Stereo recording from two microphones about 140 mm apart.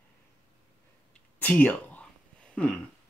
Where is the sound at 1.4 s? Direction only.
15° left (ahead or behind).